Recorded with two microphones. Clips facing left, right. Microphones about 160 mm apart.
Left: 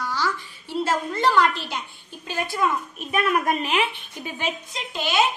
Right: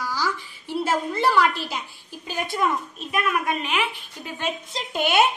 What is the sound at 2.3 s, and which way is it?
Speech, 15° right (ahead or behind).